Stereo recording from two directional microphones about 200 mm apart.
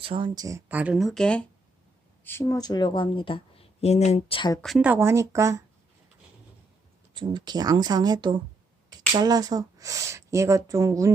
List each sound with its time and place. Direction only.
0.0 s speech: 25° right (ahead or behind); by 4.6 s 20° left (ahead or behind)
4.6 s speech: 5° right (ahead or behind)
7.1 s speech: 20° right (ahead or behind)